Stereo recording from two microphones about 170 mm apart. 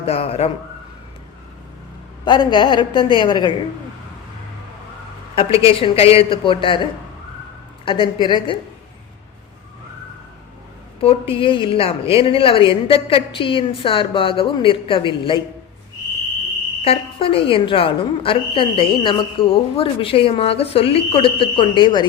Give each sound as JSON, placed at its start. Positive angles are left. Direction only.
{"t": 0.0, "sound": "a woman's voice", "side_deg": 35}
{"t": 2.2, "sound": "a woman's voice", "side_deg": 25}
{"t": 5.4, "sound": "a woman's voice", "side_deg": 35}
{"t": 7.9, "sound": "a woman's voice", "side_deg": 30}
{"t": 11.0, "sound": "a woman's voice", "side_deg": 35}
{"t": 16.8, "sound": "a woman's voice", "side_deg": 35}